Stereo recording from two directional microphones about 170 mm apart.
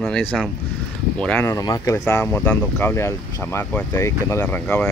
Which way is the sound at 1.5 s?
20° left (ahead or behind).